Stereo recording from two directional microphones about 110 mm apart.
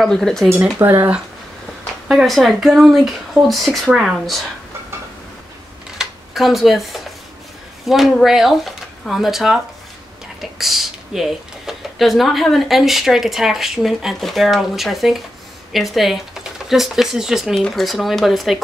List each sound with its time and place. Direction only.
0.0 s speech: 5° left (ahead or behind)
0.5 s speech: 20° right (ahead or behind)
2.0 s speech: centre (ahead or behind)
5.9 s a sound: centre (ahead or behind)
7.8 s speech: centre (ahead or behind)